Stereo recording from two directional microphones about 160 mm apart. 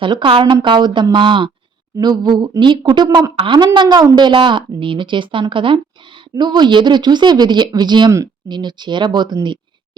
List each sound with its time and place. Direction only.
0.0 s a woman's voice: 30° right (ahead or behind)